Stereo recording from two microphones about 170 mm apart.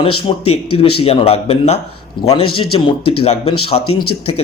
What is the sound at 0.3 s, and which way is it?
Speech, 35° left (ahead or behind).